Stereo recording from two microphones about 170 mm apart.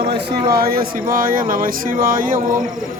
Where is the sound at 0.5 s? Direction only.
60° right (ahead or behind).